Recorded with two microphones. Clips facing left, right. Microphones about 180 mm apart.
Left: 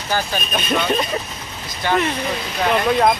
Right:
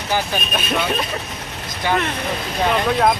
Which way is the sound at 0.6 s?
5° right (ahead or behind).